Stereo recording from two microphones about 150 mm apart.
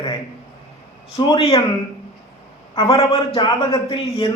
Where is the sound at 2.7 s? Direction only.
35° left (ahead or behind).